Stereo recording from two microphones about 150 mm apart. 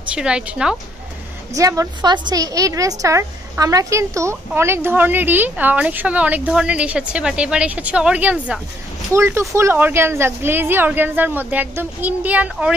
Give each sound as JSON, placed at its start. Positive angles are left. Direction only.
{"t": 0.1, "sound": "a woman's voice", "side_deg": -5}
{"t": 1.5, "sound": "a woman's voice", "side_deg": -20}